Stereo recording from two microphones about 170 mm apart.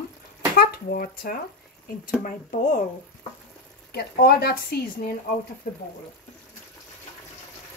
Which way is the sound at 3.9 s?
70° left (ahead or behind).